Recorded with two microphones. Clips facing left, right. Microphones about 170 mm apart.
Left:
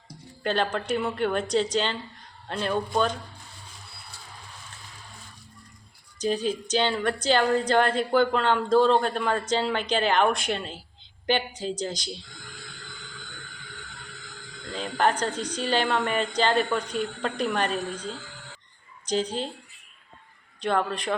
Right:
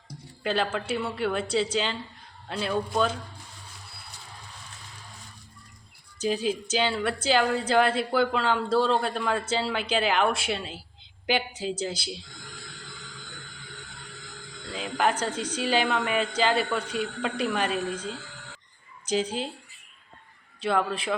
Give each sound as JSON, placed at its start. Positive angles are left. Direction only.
{"t": 0.4, "sound": "speech", "side_deg": -5}
{"t": 6.1, "sound": "a woman's voice", "side_deg": -5}
{"t": 14.7, "sound": "speech", "side_deg": -5}
{"t": 17.7, "sound": "a woman's voice", "side_deg": 35}
{"t": 19.0, "sound": "a woman's voice", "side_deg": -5}
{"t": 20.6, "sound": "speech", "side_deg": -5}